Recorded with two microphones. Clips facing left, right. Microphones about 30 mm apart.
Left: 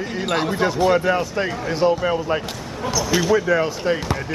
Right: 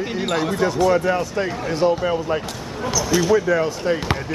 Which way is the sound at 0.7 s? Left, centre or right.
Left.